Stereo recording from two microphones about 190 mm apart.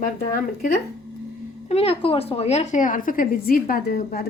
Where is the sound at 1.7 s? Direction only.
30° left (ahead or behind).